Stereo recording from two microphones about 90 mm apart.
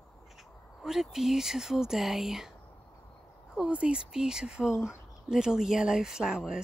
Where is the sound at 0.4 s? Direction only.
5° right (ahead or behind).